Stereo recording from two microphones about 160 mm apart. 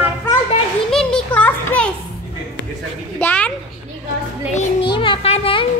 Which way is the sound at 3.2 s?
10° left (ahead or behind).